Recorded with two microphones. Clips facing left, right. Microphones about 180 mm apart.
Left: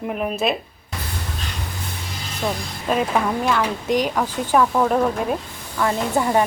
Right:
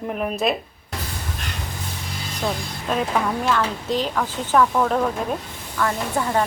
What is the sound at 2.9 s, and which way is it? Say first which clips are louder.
Speech: left 2 dB; 10° left (ahead or behind).